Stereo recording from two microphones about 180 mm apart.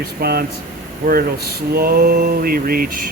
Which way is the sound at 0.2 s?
60° right (ahead or behind).